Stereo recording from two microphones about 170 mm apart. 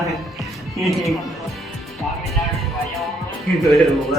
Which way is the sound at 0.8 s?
Centre (ahead or behind).